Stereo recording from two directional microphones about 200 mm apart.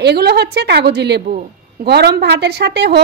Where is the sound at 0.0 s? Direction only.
55° right (ahead or behind).